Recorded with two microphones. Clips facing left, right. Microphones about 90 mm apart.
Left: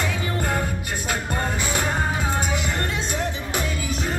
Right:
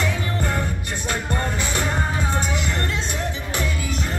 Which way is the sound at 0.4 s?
10° left (ahead or behind).